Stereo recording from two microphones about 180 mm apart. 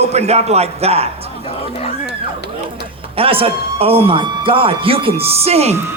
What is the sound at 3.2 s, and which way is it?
A man's voice, 30° right (ahead or behind).